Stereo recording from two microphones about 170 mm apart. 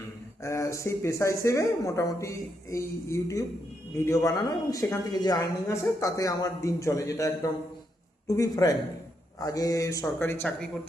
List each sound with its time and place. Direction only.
0.4 s a woman's voice: 15° left (ahead or behind)